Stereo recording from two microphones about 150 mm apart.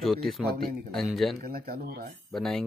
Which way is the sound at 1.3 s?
90° right.